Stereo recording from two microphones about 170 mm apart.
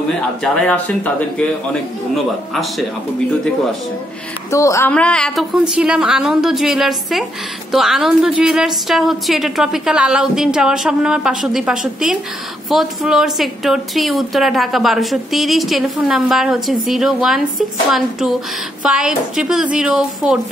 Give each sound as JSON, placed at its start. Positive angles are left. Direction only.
{"t": 0.4, "sound": "a woman's voice", "side_deg": 5}
{"t": 4.5, "sound": "speech", "side_deg": 15}
{"t": 4.9, "sound": "a woman's voice", "side_deg": 5}